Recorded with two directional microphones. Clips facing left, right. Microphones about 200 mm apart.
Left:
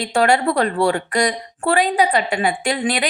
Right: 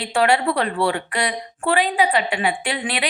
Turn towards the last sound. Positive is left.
turn(degrees=40)  # may be behind; listen again after turning